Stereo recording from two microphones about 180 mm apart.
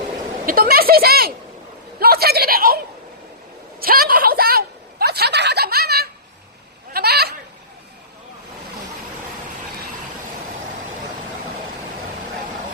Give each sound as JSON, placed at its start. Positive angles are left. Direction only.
{"t": 0.4, "sound": "speech", "side_deg": -55}
{"t": 3.8, "sound": "speech", "side_deg": -55}